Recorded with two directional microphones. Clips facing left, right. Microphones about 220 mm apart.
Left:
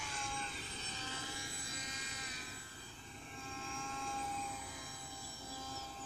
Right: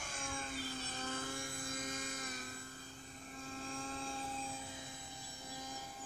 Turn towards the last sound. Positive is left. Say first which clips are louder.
# even
turn(degrees=-30)  # may be behind; listen again after turning